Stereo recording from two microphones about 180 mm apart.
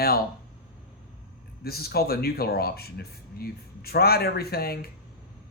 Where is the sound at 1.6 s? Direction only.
60° left (ahead or behind).